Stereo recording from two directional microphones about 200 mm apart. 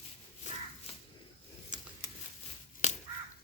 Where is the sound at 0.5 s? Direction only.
35° left (ahead or behind).